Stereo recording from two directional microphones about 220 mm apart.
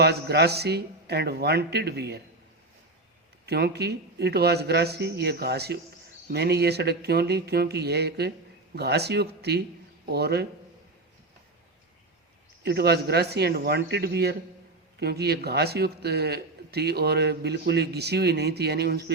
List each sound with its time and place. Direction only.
0.0 s a man's voice: 50° right (ahead or behind)
3.4 s a man's voice: 45° right (ahead or behind)
12.6 s a man's voice: 50° right (ahead or behind)